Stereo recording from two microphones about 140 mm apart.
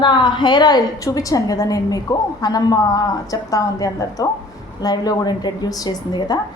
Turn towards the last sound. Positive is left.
turn(degrees=30)  # may be behind; listen again after turning